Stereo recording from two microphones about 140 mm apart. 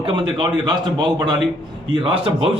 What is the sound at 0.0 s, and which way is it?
A man's voice, 35° right (ahead or behind).